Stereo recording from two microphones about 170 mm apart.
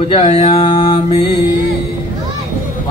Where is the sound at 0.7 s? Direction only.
25° left (ahead or behind).